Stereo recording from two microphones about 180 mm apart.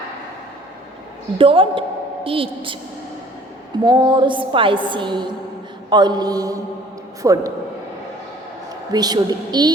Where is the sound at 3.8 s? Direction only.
25° right (ahead or behind).